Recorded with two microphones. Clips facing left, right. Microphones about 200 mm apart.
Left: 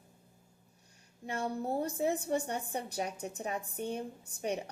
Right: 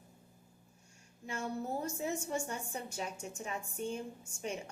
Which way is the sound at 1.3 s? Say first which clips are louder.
Left 3 dB; 35° left (ahead or behind).